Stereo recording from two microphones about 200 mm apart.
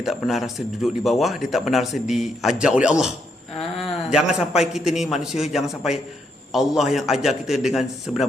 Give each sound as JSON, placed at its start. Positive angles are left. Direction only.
{"t": 0.0, "sound": "a man's voice", "side_deg": 0}
{"t": 4.1, "sound": "a man's voice", "side_deg": -5}